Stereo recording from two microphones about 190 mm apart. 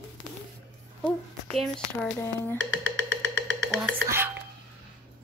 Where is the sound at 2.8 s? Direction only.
70° right (ahead or behind).